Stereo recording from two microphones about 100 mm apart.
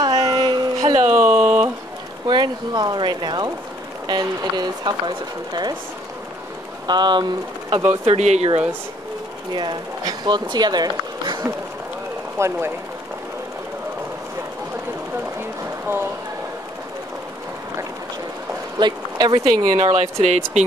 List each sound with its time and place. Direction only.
0.0 s a sound: 35° right (ahead or behind)
1.0 s a sound: 25° right (ahead or behind)
2.2 s speech: 50° right (ahead or behind)
6.9 s speech: 50° right (ahead or behind)
8.0 s speech: 90° right
9.5 s speech: 45° right (ahead or behind)
12.4 s speech: 25° right (ahead or behind)
15.9 s speech: 25° right (ahead or behind)
18.8 s speech: 45° right (ahead or behind)
19.8 s speech: 90° right